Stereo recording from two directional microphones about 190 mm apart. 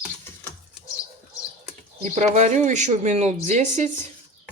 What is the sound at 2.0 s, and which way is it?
Speech, 40° right (ahead or behind).